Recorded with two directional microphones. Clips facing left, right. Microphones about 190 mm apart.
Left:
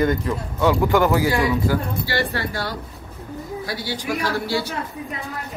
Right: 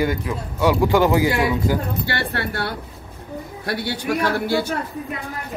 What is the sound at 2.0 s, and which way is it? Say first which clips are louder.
Speech: left 1 dB; 60° right (ahead or behind).